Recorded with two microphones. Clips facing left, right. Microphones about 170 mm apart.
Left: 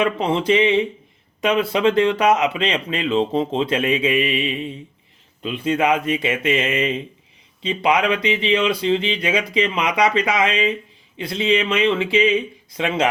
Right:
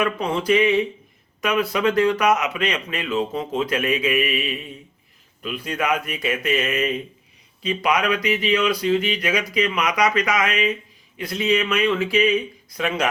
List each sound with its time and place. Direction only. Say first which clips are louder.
0.0 s speech: left 3 dB; 25° left (ahead or behind)